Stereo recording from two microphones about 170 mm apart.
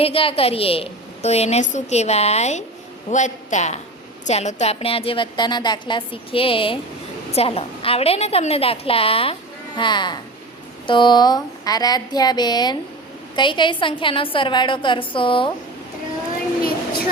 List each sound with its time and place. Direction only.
0.0 s a woman's voice: 35° left (ahead or behind)